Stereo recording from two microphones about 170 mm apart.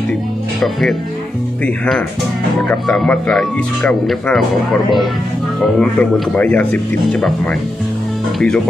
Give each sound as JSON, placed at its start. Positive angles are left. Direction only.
{"t": 0.6, "sound": "speech", "side_deg": 0}
{"t": 2.7, "sound": "speech", "side_deg": 5}
{"t": 5.6, "sound": "speech", "side_deg": 5}